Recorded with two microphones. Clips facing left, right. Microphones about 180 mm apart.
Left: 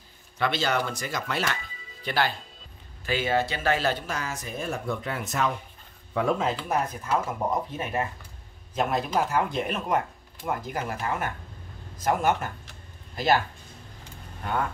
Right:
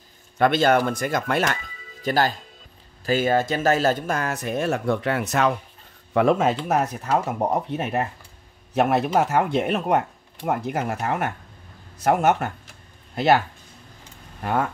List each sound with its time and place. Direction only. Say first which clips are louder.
0.4 s speech: right 8 dB; 50° right (ahead or behind)